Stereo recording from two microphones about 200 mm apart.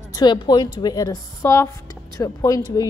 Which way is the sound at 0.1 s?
20° left (ahead or behind).